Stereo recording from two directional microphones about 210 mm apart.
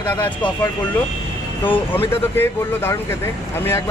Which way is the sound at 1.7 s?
10° left (ahead or behind).